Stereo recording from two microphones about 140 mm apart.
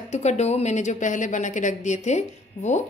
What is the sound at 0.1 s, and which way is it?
Speech, 55° left (ahead or behind).